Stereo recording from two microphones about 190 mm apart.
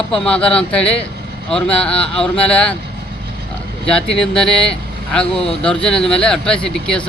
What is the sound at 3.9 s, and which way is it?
Speech, 5° left (ahead or behind).